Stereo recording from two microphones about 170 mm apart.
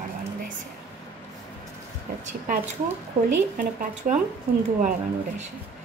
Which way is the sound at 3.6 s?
50° right (ahead or behind).